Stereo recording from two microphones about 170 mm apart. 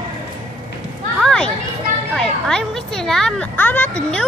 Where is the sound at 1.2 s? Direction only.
5° left (ahead or behind).